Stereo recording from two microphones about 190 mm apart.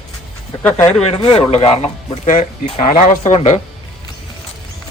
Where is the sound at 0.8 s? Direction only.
35° left (ahead or behind).